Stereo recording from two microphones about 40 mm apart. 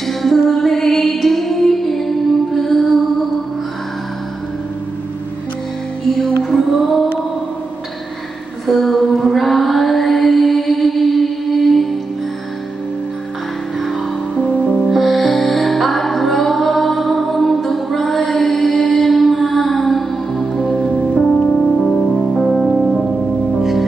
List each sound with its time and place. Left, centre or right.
0.0 s music: centre
6.5 s music: centre
8.6 s female singing: centre
14.9 s music: centre
21.4 s music: left
21.7 s music: centre
22.7 s music: centre